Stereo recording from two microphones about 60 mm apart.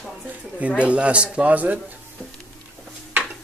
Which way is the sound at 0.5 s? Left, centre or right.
Right.